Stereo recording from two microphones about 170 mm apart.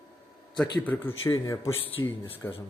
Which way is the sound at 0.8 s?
10° left (ahead or behind).